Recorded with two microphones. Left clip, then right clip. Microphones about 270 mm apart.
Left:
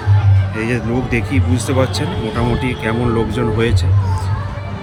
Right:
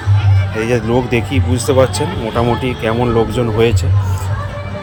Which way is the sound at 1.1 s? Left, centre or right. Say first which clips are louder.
Right 2 dB; centre.